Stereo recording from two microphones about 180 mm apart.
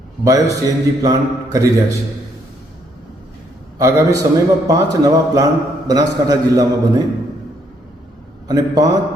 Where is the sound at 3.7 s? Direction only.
15° right (ahead or behind).